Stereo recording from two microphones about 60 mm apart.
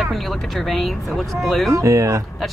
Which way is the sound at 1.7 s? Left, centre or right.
Right.